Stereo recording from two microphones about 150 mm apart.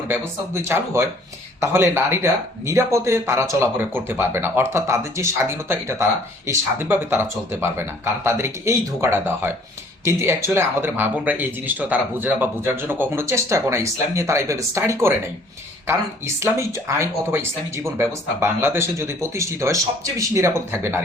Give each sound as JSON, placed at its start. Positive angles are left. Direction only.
{"t": 0.1, "sound": "speech", "side_deg": -15}